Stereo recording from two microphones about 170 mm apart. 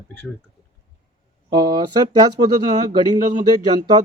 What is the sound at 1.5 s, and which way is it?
Speech, 25° right (ahead or behind).